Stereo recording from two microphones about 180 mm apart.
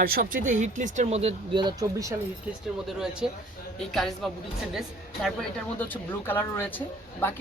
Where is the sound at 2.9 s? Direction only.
5° right (ahead or behind).